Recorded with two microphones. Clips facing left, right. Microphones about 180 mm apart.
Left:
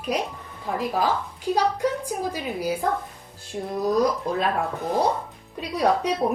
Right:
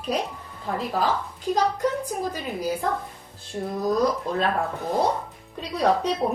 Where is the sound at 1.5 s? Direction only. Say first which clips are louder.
Even; 10° left (ahead or behind).